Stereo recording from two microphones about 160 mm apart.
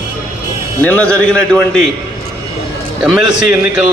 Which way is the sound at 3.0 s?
5° right (ahead or behind).